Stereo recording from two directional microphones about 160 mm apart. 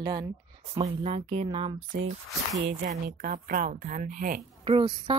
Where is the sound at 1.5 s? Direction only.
30° right (ahead or behind).